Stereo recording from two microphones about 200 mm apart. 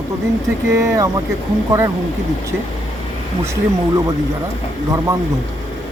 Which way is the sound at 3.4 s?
15° right (ahead or behind).